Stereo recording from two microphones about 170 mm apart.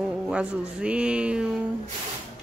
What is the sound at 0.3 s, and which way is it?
A woman's voice, 5° right (ahead or behind).